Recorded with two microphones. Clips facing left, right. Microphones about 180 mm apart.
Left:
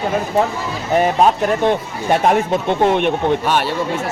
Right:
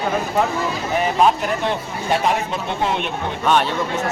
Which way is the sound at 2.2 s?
55° left (ahead or behind).